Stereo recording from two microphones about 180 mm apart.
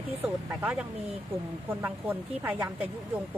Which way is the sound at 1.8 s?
10° right (ahead or behind).